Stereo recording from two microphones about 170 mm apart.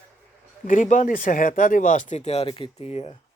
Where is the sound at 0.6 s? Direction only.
50° left (ahead or behind).